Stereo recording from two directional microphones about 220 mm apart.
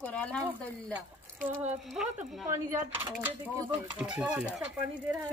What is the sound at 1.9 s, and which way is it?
Speech, centre (ahead or behind).